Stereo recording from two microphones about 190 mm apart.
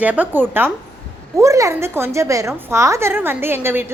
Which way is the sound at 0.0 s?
10° right (ahead or behind).